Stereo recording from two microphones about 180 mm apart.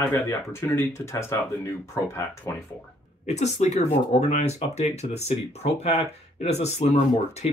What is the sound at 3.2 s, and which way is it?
Speech, 40° left (ahead or behind).